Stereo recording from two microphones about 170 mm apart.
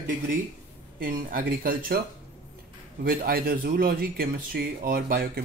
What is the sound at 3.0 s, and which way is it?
Speech, 60° right (ahead or behind).